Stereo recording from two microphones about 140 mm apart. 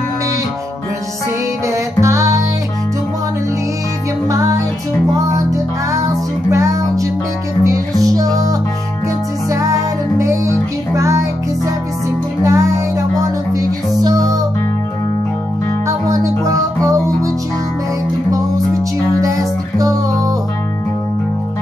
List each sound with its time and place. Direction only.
1.7 s music: 20° right (ahead or behind)
4.3 s music: 20° right (ahead or behind)
15.9 s music: 25° right (ahead or behind)
19.2 s music: 25° right (ahead or behind)